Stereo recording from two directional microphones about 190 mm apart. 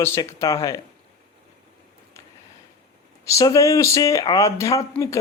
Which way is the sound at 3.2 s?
15° left (ahead or behind).